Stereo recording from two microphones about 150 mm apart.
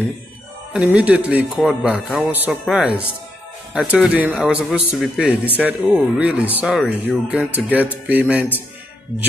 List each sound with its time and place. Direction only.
0.7 s speech: 10° right (ahead or behind)